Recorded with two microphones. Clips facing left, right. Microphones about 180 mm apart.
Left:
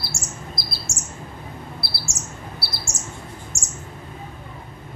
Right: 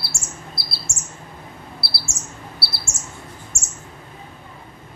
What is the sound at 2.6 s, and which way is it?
Chirp, 15° left (ahead or behind).